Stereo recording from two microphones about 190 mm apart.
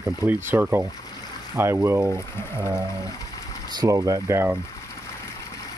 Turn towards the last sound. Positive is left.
turn(degrees=-10)  # may be behind; listen again after turning